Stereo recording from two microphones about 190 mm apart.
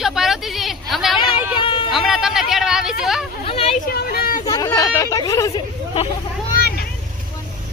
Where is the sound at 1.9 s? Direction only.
Centre (ahead or behind).